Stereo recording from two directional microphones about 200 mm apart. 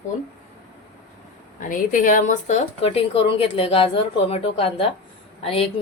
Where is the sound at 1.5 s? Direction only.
40° left (ahead or behind).